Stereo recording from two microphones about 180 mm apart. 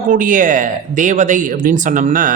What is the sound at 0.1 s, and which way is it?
Speech, 45° right (ahead or behind).